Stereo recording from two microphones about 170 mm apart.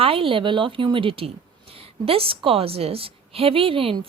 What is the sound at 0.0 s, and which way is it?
A woman's voice, 35° right (ahead or behind).